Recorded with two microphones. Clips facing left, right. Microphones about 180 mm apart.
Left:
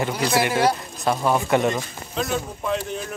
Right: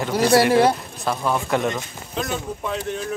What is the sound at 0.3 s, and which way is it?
Speech, 35° right (ahead or behind).